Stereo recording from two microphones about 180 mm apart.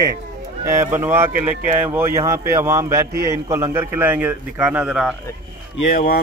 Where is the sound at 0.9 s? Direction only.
10° right (ahead or behind).